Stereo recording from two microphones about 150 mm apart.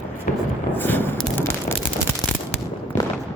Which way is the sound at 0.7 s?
15° left (ahead or behind).